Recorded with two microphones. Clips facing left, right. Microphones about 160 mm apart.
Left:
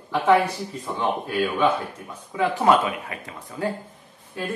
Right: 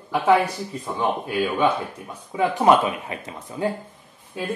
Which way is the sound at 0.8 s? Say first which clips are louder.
Right 1 dB; 15° right (ahead or behind).